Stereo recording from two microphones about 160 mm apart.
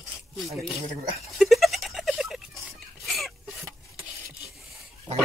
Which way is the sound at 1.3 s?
Centre (ahead or behind).